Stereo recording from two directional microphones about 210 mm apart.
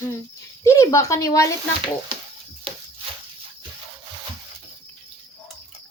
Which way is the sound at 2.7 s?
25° right (ahead or behind).